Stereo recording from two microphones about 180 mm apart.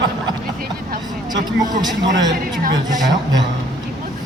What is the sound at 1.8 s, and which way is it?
Speech, 20° right (ahead or behind).